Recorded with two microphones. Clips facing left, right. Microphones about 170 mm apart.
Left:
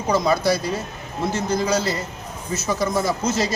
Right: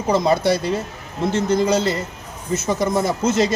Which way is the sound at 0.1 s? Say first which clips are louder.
Right 2 dB; 25° right (ahead or behind).